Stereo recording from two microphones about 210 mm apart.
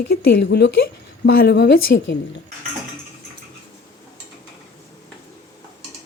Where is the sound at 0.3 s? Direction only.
55° left (ahead or behind).